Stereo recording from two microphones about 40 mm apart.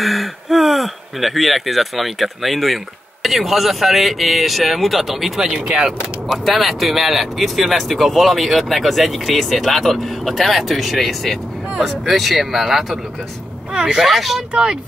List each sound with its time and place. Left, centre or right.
0.0 s speech: centre
5.4 s speech: centre
6.2 s speech: centre
13.7 s speech: centre
14.0 s speech: centre